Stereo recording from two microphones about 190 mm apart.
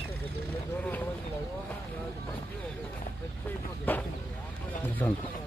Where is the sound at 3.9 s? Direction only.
10° left (ahead or behind).